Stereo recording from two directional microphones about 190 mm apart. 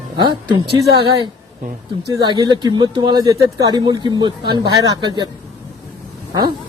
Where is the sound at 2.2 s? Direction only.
20° right (ahead or behind).